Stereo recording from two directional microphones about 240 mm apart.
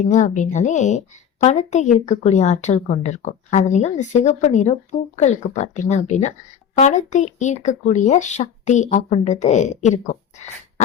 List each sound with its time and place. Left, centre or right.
0.0 s a woman's voice: left